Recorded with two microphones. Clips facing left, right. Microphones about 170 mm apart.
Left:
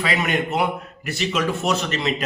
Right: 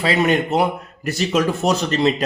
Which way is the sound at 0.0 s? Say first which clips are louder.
Right 5 dB; 30° right (ahead or behind).